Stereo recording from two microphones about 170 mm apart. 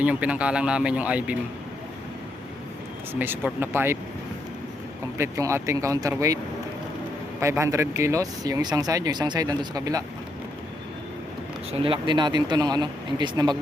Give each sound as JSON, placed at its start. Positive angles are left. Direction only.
{"t": 0.0, "sound": "speech", "side_deg": -10}
{"t": 3.1, "sound": "speech", "side_deg": -10}
{"t": 5.1, "sound": "speech", "side_deg": -15}
{"t": 11.7, "sound": "speech", "side_deg": -35}